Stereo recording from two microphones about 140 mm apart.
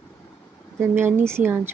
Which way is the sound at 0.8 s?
15° right (ahead or behind).